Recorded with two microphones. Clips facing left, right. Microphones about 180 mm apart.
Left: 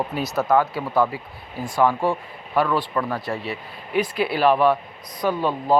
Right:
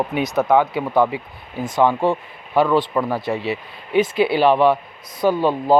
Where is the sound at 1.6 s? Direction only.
20° right (ahead or behind).